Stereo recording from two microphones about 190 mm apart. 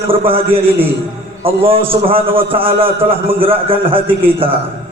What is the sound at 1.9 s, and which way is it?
A man's voice, 30° right (ahead or behind).